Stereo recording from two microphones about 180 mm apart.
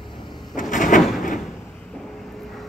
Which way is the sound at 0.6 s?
45° left (ahead or behind).